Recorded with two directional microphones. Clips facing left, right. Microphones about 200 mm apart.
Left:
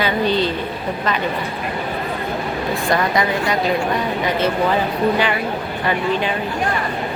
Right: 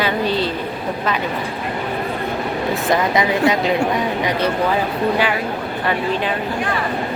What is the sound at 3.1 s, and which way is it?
Speech, 20° right (ahead or behind).